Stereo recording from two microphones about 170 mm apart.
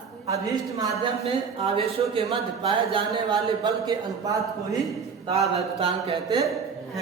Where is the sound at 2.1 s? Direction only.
30° right (ahead or behind).